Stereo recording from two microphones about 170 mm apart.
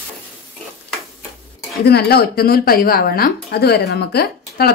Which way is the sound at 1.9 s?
70° left (ahead or behind).